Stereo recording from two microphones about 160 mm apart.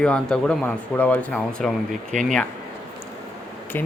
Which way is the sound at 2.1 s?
50° right (ahead or behind).